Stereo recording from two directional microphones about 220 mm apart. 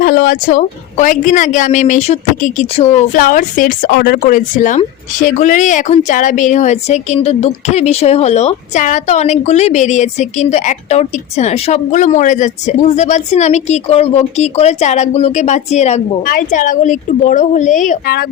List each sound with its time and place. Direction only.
0.0 s a woman's voice: 45° left (ahead or behind)